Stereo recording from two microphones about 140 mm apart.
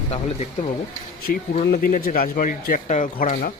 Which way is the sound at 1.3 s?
90° left.